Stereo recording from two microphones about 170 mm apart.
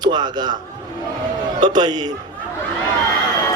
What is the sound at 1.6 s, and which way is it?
Speech, 25° right (ahead or behind).